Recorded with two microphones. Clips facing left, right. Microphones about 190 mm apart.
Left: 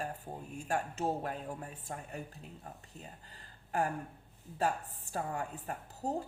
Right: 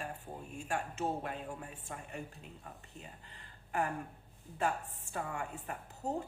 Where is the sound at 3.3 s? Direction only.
35° left (ahead or behind).